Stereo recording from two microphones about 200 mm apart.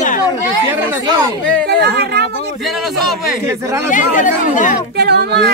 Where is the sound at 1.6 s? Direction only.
55° right (ahead or behind).